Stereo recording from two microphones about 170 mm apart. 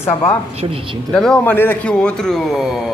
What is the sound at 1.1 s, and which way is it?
A man's voice, 5° left (ahead or behind).